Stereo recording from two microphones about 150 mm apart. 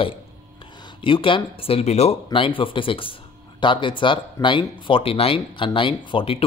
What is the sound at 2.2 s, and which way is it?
Speech, 35° left (ahead or behind).